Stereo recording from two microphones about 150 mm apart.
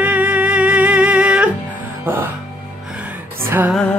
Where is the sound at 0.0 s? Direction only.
10° right (ahead or behind).